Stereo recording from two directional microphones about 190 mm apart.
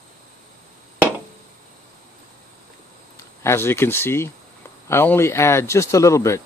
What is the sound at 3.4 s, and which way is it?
Speech, 15° left (ahead or behind).